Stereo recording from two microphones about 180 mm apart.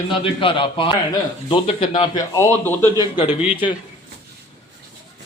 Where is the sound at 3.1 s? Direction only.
30° left (ahead or behind).